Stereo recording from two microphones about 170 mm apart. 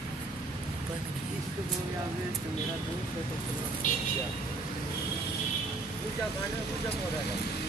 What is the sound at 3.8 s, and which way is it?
Speech, 50° left (ahead or behind).